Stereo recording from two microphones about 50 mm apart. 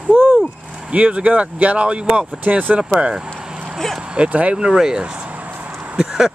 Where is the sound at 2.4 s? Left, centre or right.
Right.